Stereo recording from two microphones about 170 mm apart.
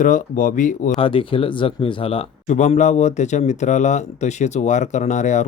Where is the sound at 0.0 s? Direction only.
50° left (ahead or behind).